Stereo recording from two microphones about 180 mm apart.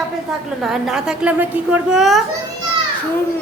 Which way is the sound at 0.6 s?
Centre (ahead or behind).